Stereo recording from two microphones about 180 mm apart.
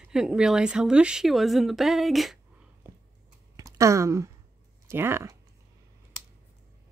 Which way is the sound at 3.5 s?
20° right (ahead or behind).